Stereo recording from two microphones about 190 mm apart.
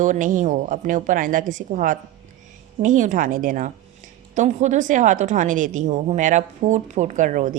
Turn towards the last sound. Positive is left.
turn(degrees=-45)  # may be behind; listen again after turning